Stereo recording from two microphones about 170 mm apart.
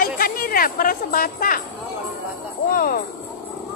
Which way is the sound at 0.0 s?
60° left (ahead or behind).